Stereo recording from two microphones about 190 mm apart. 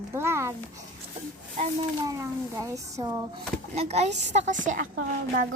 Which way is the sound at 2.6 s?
20° right (ahead or behind).